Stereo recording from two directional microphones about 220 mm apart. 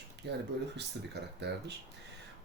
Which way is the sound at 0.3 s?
50° right (ahead or behind).